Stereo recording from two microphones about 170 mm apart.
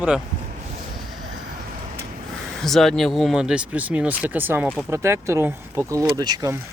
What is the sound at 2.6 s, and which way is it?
Speech, centre (ahead or behind).